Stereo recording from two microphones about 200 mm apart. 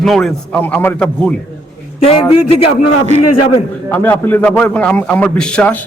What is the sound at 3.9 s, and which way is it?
A man's voice, 10° left (ahead or behind).